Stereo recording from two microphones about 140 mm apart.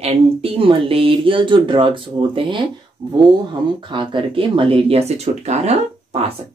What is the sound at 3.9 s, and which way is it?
Speech, 40° right (ahead or behind).